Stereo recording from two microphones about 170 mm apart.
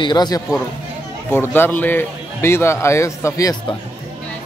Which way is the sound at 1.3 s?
10° left (ahead or behind).